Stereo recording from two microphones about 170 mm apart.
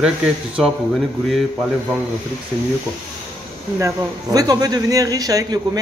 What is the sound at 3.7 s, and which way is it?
A woman's voice, 20° right (ahead or behind).